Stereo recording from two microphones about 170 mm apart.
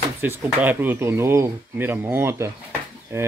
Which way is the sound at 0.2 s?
10° right (ahead or behind).